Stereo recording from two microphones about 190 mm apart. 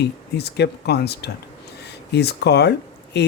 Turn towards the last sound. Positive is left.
turn(degrees=60)  # may be behind; listen again after turning